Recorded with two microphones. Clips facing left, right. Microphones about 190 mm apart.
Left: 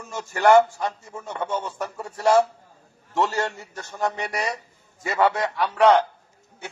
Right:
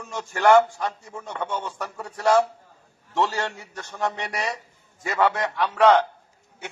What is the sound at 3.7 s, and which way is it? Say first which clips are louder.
A man's voice: left 1 dB; centre (ahead or behind).